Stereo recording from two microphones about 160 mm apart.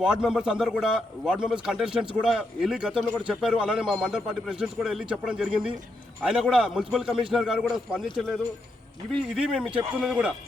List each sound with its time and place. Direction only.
0.0 s speech: 5° right (ahead or behind)